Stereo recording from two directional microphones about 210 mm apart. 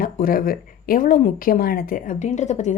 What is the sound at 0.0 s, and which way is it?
A woman's voice, 40° left (ahead or behind).